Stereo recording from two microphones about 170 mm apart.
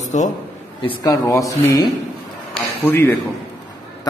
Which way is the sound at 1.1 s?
20° left (ahead or behind).